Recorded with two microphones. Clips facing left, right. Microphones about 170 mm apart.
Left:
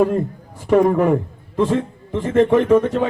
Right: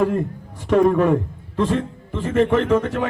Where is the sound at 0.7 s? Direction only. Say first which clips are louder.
Left 1 dB; 15° left (ahead or behind).